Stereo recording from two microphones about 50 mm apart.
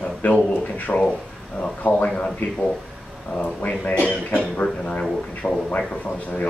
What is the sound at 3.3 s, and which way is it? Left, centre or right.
Speech, left.